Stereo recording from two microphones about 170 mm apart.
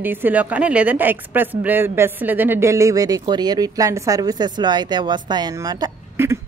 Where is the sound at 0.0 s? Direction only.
10° right (ahead or behind).